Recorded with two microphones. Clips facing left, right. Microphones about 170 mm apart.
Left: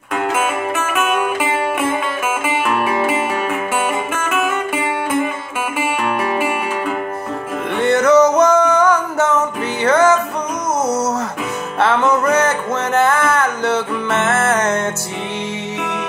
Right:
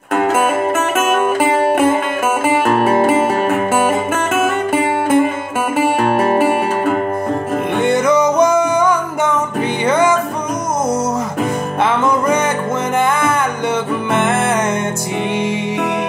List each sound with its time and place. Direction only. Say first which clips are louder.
0.1 s music: right 5 dB; 40° right (ahead or behind)
7.8 s music: left 3 dB; 10° right (ahead or behind)
11.8 s music: left 1 dB; 10° right (ahead or behind)